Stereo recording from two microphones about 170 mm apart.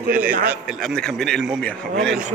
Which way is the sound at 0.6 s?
Centre (ahead or behind).